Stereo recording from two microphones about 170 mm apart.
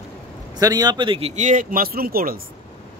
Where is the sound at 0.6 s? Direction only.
20° right (ahead or behind); by 2.3 s 60° right (ahead or behind).